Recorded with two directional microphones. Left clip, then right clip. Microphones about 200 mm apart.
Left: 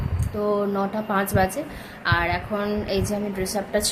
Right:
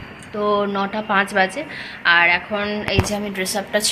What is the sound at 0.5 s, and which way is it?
Speech, 20° right (ahead or behind).